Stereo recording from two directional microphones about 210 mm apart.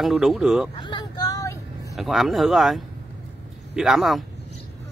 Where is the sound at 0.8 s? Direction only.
20° left (ahead or behind).